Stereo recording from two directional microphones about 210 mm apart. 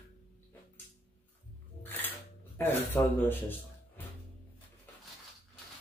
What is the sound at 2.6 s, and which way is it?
Speech, 10° left (ahead or behind).